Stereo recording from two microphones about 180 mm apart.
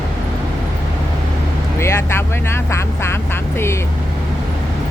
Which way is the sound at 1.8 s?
15° left (ahead or behind).